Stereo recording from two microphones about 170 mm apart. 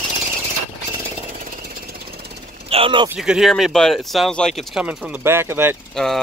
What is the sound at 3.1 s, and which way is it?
Speech, 5° right (ahead or behind).